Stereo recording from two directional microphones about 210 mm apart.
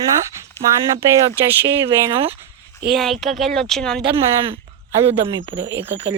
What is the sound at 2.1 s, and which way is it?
Speech, 25° right (ahead or behind).